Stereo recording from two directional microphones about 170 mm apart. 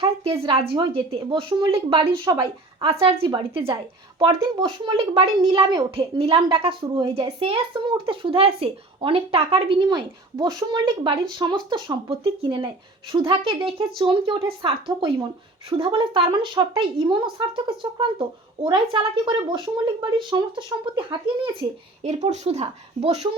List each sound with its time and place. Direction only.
0.0 s speech: 35° right (ahead or behind)
2.8 s speech: 35° right (ahead or behind)
22.0 s speech: 40° right (ahead or behind)